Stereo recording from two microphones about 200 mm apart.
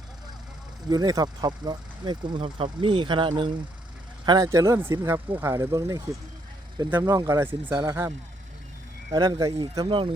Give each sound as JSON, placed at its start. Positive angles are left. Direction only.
{"t": 0.9, "sound": "speech", "side_deg": -20}
{"t": 9.1, "sound": "speech", "side_deg": -20}